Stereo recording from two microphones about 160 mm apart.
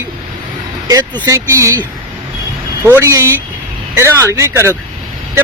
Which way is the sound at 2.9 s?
20° right (ahead or behind).